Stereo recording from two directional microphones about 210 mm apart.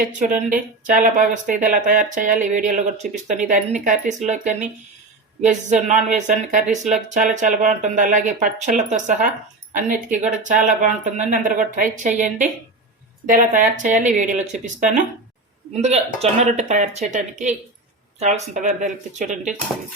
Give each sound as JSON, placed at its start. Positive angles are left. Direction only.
{"t": 0.0, "sound": "speech", "side_deg": -35}